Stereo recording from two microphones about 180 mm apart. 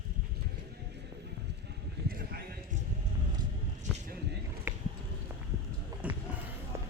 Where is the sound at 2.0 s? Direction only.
55° right (ahead or behind).